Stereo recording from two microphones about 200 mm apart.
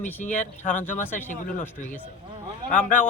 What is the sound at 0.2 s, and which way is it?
Speech, 35° left (ahead or behind).